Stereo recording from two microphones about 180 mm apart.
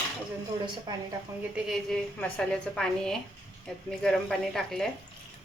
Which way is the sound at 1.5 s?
Centre (ahead or behind).